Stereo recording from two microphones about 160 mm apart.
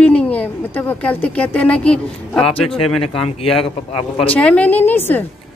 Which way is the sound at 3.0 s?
35° left (ahead or behind).